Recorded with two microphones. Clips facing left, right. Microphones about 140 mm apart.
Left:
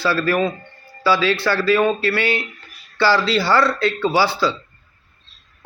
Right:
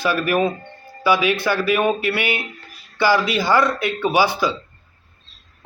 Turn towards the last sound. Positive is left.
turn(degrees=-15)  # may be behind; listen again after turning